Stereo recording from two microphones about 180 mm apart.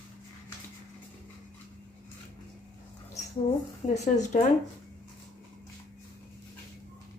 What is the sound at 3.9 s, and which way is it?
Speech, 40° left (ahead or behind).